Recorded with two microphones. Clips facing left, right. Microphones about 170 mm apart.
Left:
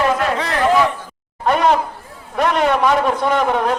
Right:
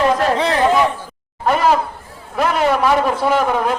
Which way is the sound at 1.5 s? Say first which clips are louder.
Even; 5° right (ahead or behind).